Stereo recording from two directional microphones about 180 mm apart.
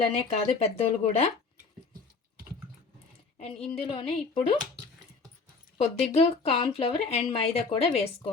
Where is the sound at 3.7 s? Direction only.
30° left (ahead or behind).